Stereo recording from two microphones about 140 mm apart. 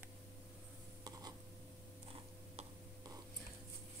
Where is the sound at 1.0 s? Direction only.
25° right (ahead or behind).